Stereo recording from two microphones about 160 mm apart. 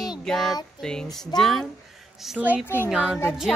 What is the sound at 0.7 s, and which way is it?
A woman's voice, 5° left (ahead or behind).